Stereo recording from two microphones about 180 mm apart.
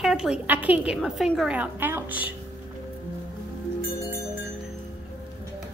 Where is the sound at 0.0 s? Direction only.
5° right (ahead or behind).